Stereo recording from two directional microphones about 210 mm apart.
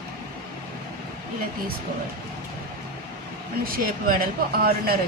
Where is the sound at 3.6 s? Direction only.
45° right (ahead or behind).